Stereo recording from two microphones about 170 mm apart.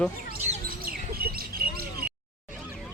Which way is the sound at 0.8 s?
60° right (ahead or behind).